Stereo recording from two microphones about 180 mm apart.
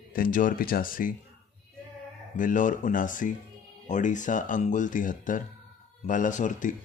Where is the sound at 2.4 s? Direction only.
45° left (ahead or behind).